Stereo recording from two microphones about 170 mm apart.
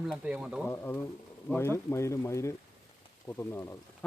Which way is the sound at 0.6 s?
10° left (ahead or behind).